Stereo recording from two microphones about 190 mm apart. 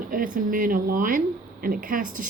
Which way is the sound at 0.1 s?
45° right (ahead or behind).